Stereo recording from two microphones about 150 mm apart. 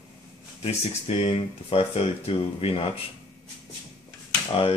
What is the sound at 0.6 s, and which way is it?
Speech, 40° left (ahead or behind).